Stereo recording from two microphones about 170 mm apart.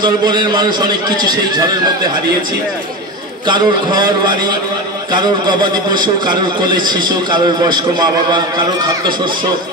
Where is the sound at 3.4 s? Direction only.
25° right (ahead or behind).